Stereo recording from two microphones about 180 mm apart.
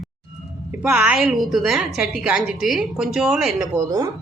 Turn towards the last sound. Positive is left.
turn(degrees=-20)  # may be behind; listen again after turning